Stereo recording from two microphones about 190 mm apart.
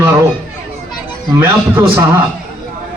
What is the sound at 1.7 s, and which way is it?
Speech, 10° right (ahead or behind).